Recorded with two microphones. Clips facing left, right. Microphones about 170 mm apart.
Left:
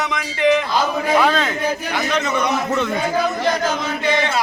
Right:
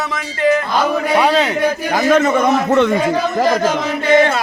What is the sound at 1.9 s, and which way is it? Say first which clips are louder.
A man's voice: right 8 dB; 45° right (ahead or behind).